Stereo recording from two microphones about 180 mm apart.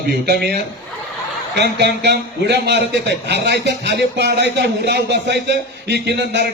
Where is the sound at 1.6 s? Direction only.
70° right (ahead or behind).